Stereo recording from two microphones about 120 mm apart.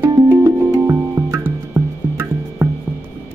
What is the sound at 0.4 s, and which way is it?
Music, 30° right (ahead or behind).